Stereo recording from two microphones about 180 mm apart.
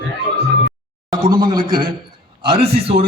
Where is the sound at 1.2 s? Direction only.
25° right (ahead or behind).